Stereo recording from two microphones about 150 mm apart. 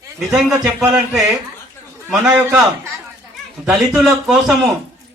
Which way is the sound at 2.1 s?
15° right (ahead or behind).